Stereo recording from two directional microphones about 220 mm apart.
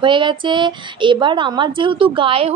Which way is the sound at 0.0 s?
20° right (ahead or behind).